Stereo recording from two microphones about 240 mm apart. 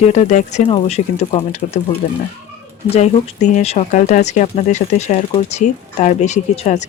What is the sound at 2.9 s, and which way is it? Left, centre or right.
Speech, left.